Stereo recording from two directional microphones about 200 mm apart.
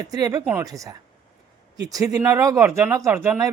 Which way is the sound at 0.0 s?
15° right (ahead or behind).